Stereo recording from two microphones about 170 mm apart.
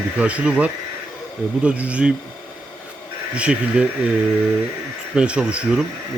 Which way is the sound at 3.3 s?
5° right (ahead or behind).